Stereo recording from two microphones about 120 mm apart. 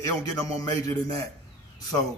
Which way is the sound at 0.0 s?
30° left (ahead or behind).